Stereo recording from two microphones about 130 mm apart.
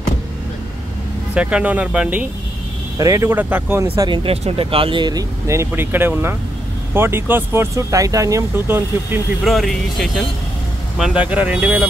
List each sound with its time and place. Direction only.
1.3 s speech: 10° right (ahead or behind)
3.0 s speech: 25° right (ahead or behind)
4.1 s speech: 45° right (ahead or behind)
5.5 s speech: 20° right (ahead or behind)
9.4 s speech: centre (ahead or behind)
11.0 s speech: 10° right (ahead or behind)